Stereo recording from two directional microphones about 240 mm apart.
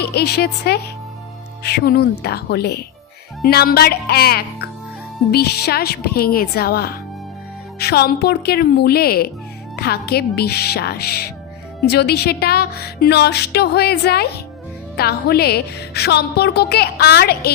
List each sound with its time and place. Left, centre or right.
0.1 s a woman's voice: left